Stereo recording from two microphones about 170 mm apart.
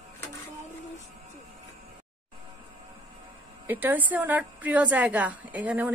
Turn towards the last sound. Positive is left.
turn(degrees=-10)  # may be behind; listen again after turning